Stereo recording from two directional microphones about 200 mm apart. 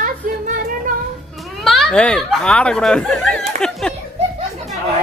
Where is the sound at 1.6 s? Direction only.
Centre (ahead or behind).